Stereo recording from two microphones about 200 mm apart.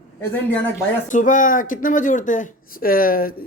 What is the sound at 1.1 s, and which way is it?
Speech, 40° left (ahead or behind).